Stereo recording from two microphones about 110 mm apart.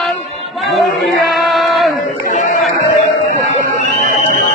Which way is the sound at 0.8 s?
Centre (ahead or behind).